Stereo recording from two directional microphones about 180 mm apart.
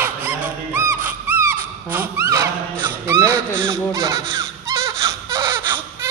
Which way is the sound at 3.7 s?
20° right (ahead or behind).